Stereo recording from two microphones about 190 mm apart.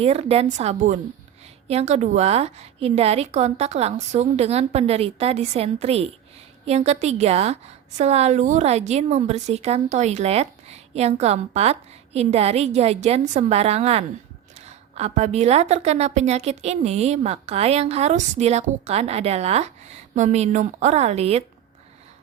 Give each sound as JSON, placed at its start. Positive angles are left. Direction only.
{"t": 0.0, "sound": "a woman's voice", "side_deg": -30}